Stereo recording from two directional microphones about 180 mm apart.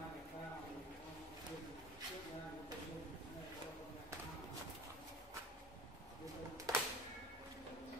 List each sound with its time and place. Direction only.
6.7 s music: 20° right (ahead or behind)